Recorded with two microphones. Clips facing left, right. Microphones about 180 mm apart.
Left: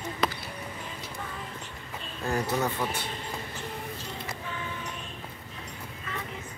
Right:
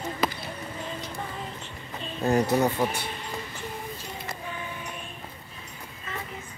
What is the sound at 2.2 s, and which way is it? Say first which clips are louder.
Speech: right 6 dB; 20° right (ahead or behind).